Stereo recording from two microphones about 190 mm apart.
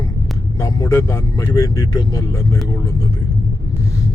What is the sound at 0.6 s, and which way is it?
Speech, 15° left (ahead or behind).